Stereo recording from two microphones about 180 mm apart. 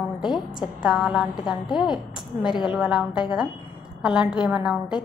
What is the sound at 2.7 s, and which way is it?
A woman's voice, 5° right (ahead or behind).